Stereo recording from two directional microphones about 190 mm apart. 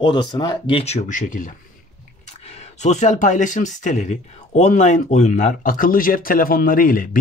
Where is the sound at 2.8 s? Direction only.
40° left (ahead or behind).